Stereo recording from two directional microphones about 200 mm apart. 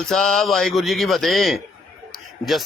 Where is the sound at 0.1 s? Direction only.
Centre (ahead or behind).